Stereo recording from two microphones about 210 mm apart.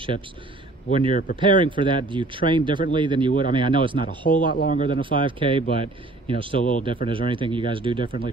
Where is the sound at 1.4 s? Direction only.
25° right (ahead or behind).